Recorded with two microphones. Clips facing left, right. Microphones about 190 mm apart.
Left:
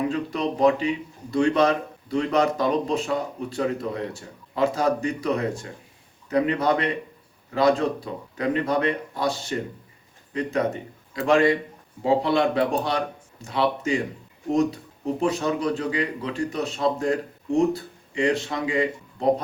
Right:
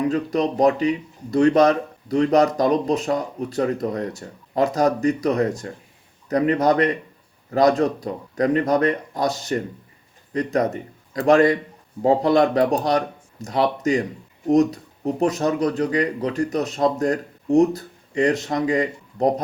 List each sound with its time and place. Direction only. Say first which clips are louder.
0.1 s a man's voice: right 5 dB; 40° right (ahead or behind)